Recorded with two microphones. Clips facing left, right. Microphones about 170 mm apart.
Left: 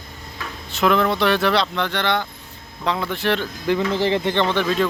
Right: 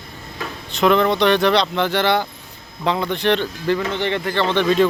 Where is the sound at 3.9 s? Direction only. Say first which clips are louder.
Left 2 dB; 30° left (ahead or behind).